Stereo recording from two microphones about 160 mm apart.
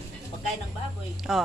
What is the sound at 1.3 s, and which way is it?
Speech, centre (ahead or behind).